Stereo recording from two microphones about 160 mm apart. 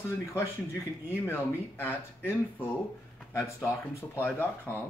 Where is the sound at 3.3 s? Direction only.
15° left (ahead or behind).